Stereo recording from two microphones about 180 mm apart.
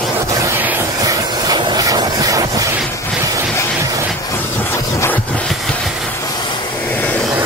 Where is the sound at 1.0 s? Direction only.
20° right (ahead or behind).